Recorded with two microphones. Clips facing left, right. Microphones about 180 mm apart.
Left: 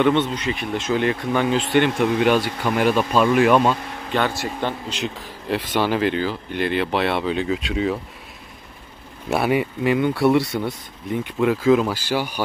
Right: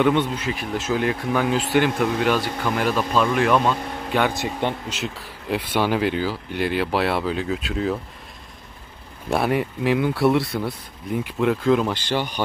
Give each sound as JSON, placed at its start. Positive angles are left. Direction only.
{"t": 0.0, "sound": "speech", "side_deg": -10}
{"t": 2.2, "sound": "speech", "side_deg": 15}
{"t": 4.1, "sound": "speech", "side_deg": -15}
{"t": 4.8, "sound": "speech", "side_deg": -10}
{"t": 9.3, "sound": "speech", "side_deg": 0}